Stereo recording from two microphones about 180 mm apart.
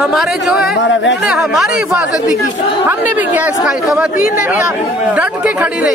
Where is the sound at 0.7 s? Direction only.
90° left.